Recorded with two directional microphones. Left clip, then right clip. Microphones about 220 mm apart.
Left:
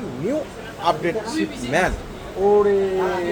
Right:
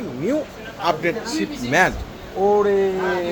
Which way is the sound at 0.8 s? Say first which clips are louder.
Even; 30° right (ahead or behind).